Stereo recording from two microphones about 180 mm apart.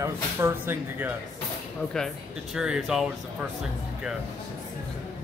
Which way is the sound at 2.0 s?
5° left (ahead or behind).